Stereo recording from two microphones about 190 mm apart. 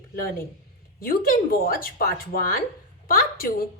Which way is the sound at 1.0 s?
50° left (ahead or behind).